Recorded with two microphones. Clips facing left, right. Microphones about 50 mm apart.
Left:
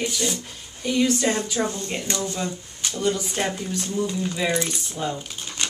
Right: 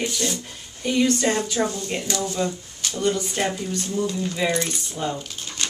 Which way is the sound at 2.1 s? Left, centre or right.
Left.